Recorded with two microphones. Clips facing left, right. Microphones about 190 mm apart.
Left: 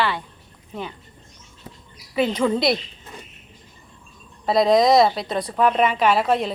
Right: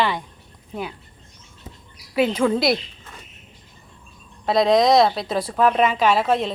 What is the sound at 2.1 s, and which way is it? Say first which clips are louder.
Speech: right 1 dB; 5° right (ahead or behind).